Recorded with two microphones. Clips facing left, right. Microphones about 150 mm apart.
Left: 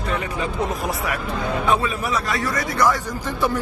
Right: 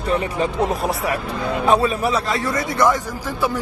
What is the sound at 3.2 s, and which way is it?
Speech, 5° right (ahead or behind).